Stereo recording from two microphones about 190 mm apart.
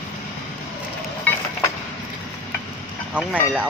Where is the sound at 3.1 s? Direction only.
5° right (ahead or behind).